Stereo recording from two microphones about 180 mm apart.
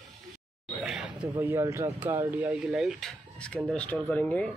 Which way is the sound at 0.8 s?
5° right (ahead or behind).